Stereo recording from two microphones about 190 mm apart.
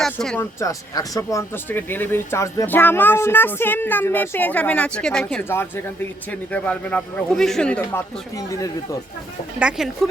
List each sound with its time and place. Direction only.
0.0 s a sound: centre (ahead or behind)
0.6 s speech: 15° left (ahead or behind)
8.4 s speech: 15° left (ahead or behind)
9.6 s speech: 5° right (ahead or behind)